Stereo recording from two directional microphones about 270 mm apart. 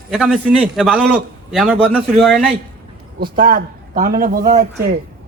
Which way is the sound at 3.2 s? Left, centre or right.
Right.